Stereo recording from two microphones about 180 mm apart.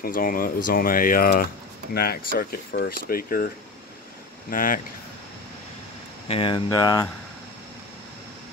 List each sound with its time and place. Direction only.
0.0 s speech: 50° left (ahead or behind)
4.5 s speech: 50° left (ahead or behind)
6.2 s speech: 30° left (ahead or behind)